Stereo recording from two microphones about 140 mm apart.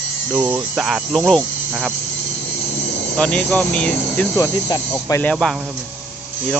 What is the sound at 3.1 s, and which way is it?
Speech, 10° left (ahead or behind).